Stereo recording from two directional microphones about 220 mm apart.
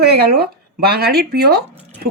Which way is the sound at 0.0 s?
45° right (ahead or behind).